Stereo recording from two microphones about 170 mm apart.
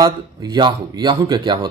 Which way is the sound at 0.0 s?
25° right (ahead or behind).